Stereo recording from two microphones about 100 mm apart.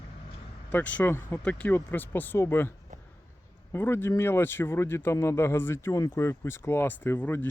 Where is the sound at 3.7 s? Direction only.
25° left (ahead or behind).